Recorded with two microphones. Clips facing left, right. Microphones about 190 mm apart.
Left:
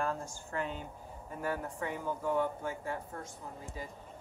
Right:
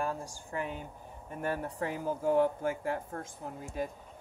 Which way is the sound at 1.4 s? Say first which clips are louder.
Right 2 dB; 35° right (ahead or behind).